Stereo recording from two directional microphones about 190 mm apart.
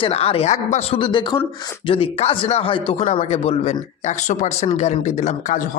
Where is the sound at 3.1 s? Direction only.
40° left (ahead or behind).